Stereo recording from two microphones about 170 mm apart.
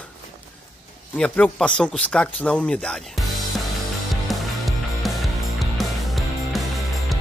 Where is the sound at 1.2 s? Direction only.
10° left (ahead or behind).